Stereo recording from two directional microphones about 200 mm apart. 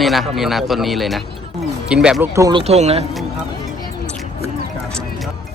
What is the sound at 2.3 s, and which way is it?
Speech, 20° right (ahead or behind).